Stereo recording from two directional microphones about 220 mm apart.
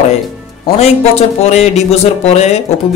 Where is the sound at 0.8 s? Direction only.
30° left (ahead or behind).